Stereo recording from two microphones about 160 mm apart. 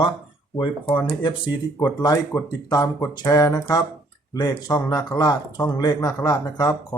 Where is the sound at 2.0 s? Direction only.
25° left (ahead or behind).